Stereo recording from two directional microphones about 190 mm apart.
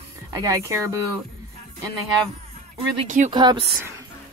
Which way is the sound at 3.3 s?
25° right (ahead or behind).